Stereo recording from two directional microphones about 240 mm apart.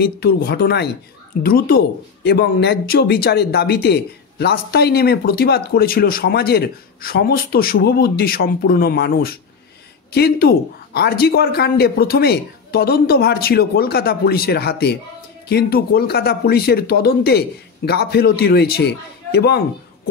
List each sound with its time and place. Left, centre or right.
0.0 s speech: left